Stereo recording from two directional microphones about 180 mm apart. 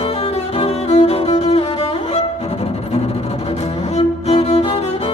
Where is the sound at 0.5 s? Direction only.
35° left (ahead or behind).